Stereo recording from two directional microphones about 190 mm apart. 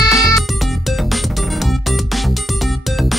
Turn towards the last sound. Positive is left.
turn(degrees=0)  # may be behind; listen again after turning